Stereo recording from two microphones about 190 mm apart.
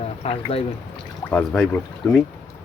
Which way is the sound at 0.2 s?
30° left (ahead or behind).